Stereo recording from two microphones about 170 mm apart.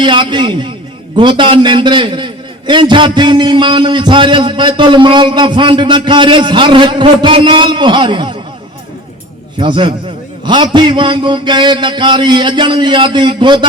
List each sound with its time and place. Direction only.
0.0 s a man's voice: 25° right (ahead or behind)
9.6 s a man's voice: 30° right (ahead or behind)